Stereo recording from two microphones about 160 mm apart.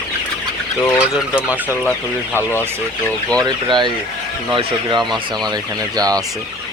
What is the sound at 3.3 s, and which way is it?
Speech, 25° right (ahead or behind).